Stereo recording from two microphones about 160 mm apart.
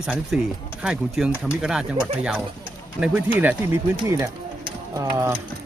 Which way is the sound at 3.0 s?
10° right (ahead or behind).